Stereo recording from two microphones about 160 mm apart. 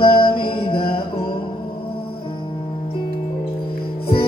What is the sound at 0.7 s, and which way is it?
Music, 35° left (ahead or behind).